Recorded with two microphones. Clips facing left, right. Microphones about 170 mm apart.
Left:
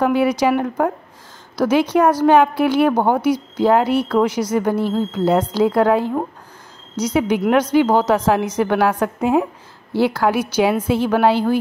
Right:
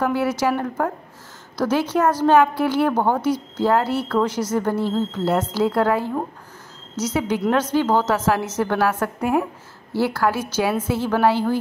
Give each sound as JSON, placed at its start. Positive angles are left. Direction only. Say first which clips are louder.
{"t": 0.0, "sound": "a woman's voice", "louder": "left 4 dB", "side_deg": 15}